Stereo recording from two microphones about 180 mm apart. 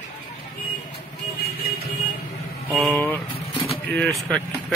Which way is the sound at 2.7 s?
Centre (ahead or behind).